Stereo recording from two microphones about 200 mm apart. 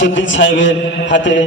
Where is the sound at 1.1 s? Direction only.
65° left (ahead or behind).